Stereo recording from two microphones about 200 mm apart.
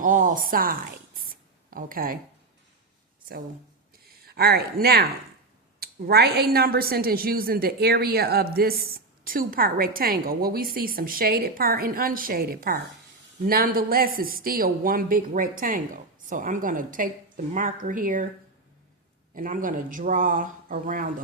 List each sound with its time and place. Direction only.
0.0 s a woman's voice: 40° right (ahead or behind)
4.3 s a woman's voice: 50° right (ahead or behind)
19.3 s speech: 40° right (ahead or behind)